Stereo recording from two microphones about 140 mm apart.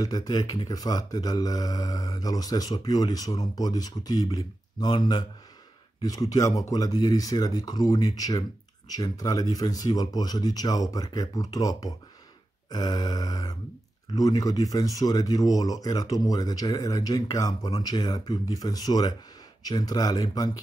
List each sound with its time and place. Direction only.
0.0 s speech: 25° left (ahead or behind)